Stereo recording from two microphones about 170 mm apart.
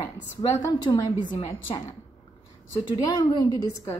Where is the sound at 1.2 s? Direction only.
50° left (ahead or behind).